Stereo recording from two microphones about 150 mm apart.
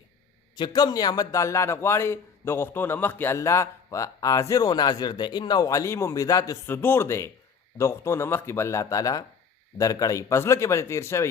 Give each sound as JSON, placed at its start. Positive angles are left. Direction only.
{"t": 0.5, "sound": "a man's voice", "side_deg": 30}